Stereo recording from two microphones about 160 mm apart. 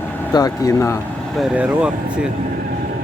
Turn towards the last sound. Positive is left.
turn(degrees=-5)  # may be behind; listen again after turning